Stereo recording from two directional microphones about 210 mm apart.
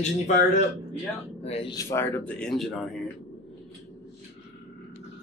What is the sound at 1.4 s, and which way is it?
Speech, 30° left (ahead or behind).